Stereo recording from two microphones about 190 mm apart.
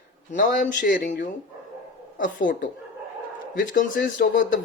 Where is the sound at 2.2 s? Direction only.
45° left (ahead or behind).